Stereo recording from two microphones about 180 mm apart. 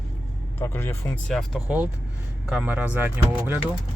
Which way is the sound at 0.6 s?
10° left (ahead or behind).